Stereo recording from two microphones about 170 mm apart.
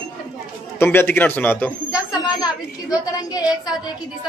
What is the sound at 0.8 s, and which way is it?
Speech, 10° left (ahead or behind).